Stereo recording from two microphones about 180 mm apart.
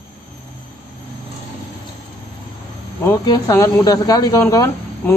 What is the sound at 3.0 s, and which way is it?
Speech, 20° left (ahead or behind).